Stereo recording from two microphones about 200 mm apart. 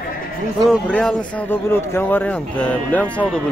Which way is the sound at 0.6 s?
5° left (ahead or behind).